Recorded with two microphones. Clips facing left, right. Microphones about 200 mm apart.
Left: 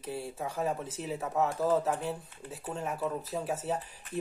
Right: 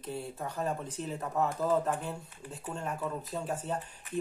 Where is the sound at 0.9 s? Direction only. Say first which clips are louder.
Left 1 dB; 5° left (ahead or behind).